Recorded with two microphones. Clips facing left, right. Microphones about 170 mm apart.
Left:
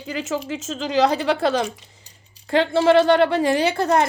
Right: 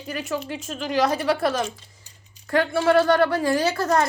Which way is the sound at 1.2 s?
20° left (ahead or behind).